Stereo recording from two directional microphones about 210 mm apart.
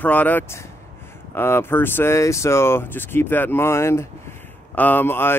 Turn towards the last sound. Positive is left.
turn(degrees=10)  # may be behind; listen again after turning